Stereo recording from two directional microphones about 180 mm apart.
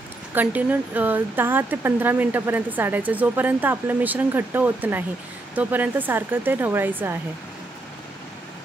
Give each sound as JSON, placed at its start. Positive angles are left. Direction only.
{"t": 0.3, "sound": "speech", "side_deg": -10}